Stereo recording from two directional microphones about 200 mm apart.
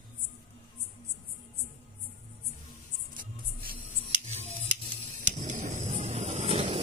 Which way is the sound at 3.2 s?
45° right (ahead or behind).